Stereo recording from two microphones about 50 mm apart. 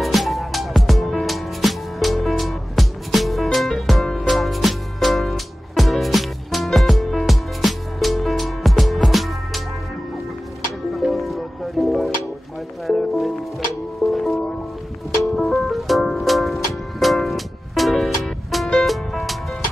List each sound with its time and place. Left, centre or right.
0.0 s music: centre
10.9 s music: centre